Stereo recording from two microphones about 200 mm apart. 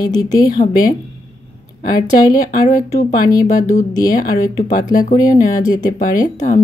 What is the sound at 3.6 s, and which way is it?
Speech, 15° left (ahead or behind).